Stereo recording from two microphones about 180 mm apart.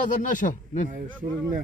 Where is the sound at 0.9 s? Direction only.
50° right (ahead or behind).